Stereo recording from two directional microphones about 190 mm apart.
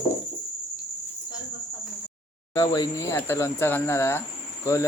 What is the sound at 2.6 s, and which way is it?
Cricket, 20° left (ahead or behind).